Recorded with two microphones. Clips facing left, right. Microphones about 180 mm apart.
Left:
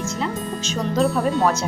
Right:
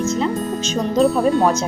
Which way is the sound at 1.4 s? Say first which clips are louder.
Right 3 dB; 20° right (ahead or behind).